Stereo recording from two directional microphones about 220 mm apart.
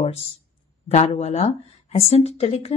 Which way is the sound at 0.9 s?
30° left (ahead or behind).